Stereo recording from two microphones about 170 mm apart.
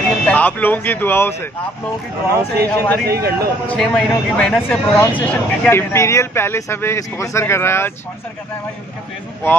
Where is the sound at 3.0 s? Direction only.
70° right (ahead or behind).